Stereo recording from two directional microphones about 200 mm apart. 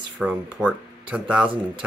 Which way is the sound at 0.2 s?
5° right (ahead or behind).